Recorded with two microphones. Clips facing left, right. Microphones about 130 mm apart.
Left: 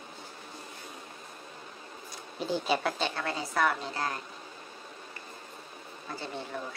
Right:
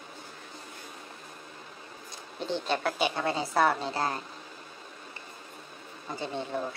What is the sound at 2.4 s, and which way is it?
Speech, 5° left (ahead or behind).